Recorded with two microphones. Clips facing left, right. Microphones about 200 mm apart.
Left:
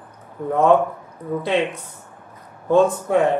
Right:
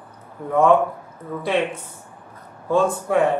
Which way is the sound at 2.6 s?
20° left (ahead or behind).